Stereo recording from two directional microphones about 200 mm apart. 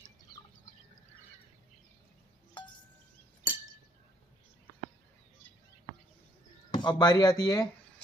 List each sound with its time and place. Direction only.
6.7 s speech: 20° left (ahead or behind)